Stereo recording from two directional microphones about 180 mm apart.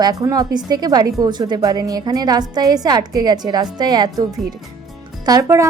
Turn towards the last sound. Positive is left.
turn(degrees=-20)  # may be behind; listen again after turning